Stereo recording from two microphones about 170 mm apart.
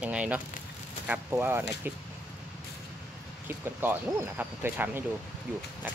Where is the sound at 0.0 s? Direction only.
5° right (ahead or behind).